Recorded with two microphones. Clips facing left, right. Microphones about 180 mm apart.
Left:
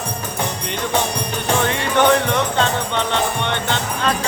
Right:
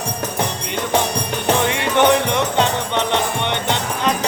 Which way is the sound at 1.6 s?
20° right (ahead or behind).